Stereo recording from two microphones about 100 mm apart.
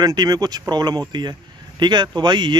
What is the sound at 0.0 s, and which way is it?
Speech, 40° right (ahead or behind).